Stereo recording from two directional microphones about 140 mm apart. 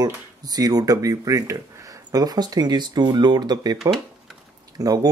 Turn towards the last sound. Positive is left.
turn(degrees=-25)  # may be behind; listen again after turning